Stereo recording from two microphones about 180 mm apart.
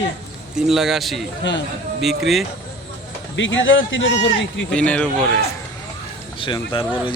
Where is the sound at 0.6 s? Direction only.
Centre (ahead or behind).